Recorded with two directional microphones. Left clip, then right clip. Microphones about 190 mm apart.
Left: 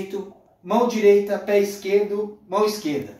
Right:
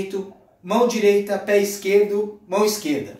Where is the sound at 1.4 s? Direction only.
Centre (ahead or behind).